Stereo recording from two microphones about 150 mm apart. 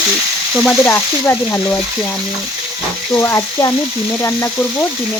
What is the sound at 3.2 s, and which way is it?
Frying, 20° left (ahead or behind).